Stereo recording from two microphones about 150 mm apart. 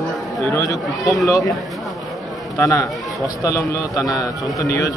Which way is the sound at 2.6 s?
20° left (ahead or behind).